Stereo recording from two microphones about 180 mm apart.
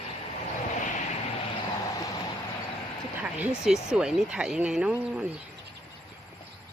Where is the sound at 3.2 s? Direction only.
10° right (ahead or behind).